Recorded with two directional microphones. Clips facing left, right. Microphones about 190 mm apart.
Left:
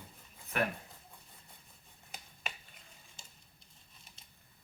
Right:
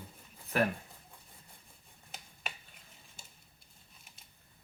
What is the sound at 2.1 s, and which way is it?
Finger snapping, centre (ahead or behind).